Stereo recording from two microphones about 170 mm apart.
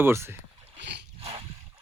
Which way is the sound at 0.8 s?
90° right.